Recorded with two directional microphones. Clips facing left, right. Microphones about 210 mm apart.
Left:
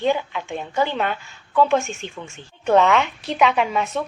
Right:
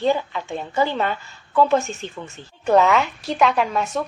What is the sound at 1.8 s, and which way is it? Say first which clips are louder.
Speech: right 1 dB; 40° right (ahead or behind).